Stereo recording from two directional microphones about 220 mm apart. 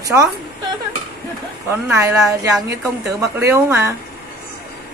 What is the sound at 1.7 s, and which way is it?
Speech, 10° right (ahead or behind).